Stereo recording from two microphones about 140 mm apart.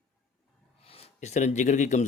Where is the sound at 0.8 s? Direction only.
45° left (ahead or behind); by 2.0 s 65° left (ahead or behind).